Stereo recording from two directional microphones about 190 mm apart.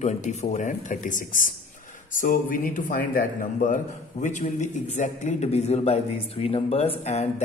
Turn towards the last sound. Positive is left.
turn(degrees=35)  # may be behind; listen again after turning